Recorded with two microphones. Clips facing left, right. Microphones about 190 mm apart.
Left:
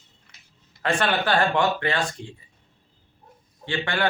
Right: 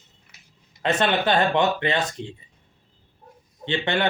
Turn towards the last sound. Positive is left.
turn(degrees=-20)  # may be behind; listen again after turning